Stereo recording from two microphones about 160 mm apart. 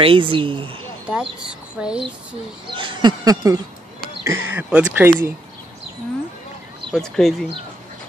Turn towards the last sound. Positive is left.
turn(degrees=0)  # may be behind; listen again after turning